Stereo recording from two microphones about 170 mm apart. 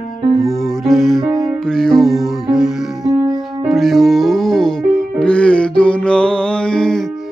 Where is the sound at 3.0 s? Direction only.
20° right (ahead or behind).